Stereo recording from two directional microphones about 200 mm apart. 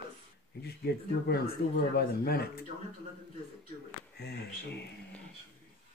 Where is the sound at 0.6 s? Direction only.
55° left (ahead or behind).